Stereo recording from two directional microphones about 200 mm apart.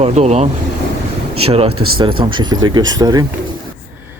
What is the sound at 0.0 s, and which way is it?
Speech, 35° right (ahead or behind).